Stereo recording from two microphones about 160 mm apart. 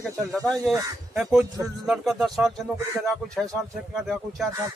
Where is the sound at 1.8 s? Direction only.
5° right (ahead or behind).